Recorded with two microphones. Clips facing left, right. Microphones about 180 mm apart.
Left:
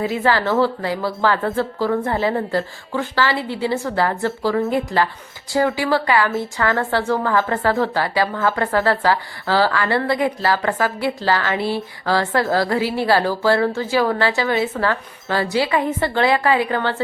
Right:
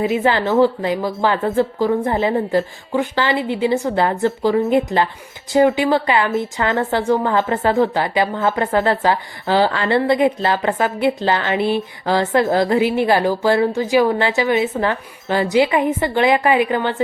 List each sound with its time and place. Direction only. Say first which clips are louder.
0.0 s a woman's voice: right 2 dB; 20° right (ahead or behind)